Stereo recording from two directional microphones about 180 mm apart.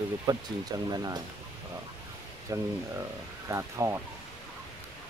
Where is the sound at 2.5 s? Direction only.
20° right (ahead or behind).